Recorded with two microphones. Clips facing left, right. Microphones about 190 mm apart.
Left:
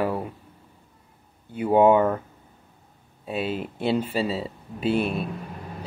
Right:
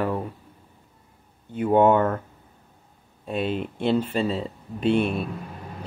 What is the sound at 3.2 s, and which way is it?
Speech, 5° left (ahead or behind).